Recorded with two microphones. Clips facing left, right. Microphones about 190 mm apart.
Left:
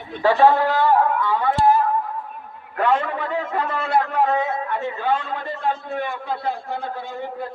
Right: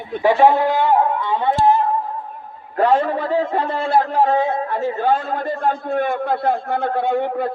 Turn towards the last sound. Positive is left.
turn(degrees=-70)  # may be behind; listen again after turning